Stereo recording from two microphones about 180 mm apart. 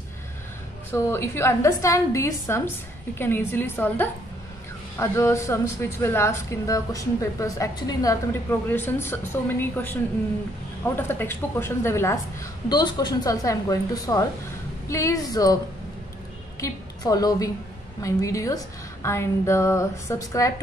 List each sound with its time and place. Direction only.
0.9 s speech: 15° left (ahead or behind)
11.0 s a woman's voice: 10° left (ahead or behind)
16.6 s a woman's voice: 20° left (ahead or behind)